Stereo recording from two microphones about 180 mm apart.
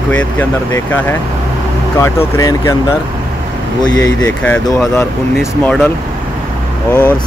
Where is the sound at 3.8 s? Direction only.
20° left (ahead or behind).